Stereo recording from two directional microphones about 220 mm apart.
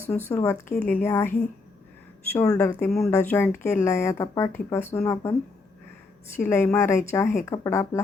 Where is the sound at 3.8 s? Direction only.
15° left (ahead or behind).